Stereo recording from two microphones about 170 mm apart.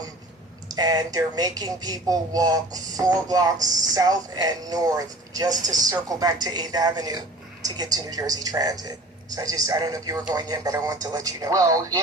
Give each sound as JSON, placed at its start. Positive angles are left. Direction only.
{"t": 0.7, "sound": "speech", "side_deg": -20}